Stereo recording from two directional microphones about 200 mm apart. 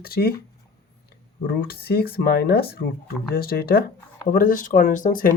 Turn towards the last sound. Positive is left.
turn(degrees=45)  # may be behind; listen again after turning